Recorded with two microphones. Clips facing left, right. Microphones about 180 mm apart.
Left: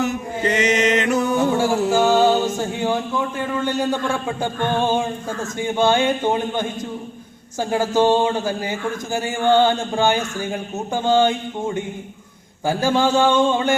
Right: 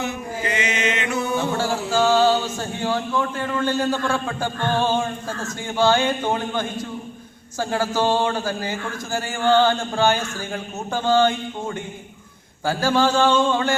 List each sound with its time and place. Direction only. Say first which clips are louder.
0.0 s mantra: left 5 dB; 40° left (ahead or behind)
1.5 s music: left 4 dB; 15° left (ahead or behind)
2.6 s a man's voice: left 3 dB; 15° left (ahead or behind)